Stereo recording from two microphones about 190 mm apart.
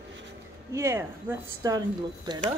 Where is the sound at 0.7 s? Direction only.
15° right (ahead or behind).